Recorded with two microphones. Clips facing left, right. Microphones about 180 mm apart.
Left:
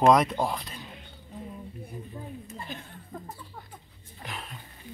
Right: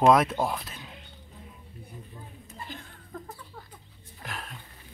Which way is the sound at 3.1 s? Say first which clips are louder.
Even; 15° left (ahead or behind).